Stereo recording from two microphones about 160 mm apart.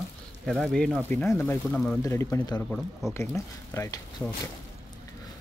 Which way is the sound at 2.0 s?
15° left (ahead or behind).